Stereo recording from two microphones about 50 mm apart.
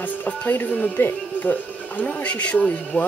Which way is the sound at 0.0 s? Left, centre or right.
Left.